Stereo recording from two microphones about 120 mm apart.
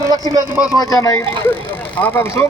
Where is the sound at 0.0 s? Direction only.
35° right (ahead or behind).